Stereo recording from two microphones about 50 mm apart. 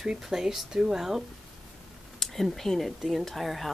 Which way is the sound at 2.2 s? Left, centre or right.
Centre.